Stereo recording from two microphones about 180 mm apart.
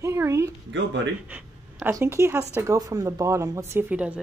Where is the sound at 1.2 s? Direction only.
10° right (ahead or behind).